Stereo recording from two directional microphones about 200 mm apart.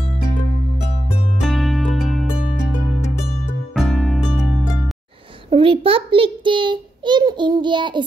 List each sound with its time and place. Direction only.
1.4 s music: centre (ahead or behind)
5.5 s a child's voice: 25° right (ahead or behind)